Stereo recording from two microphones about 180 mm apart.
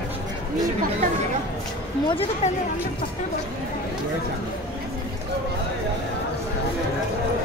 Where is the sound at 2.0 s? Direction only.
30° left (ahead or behind).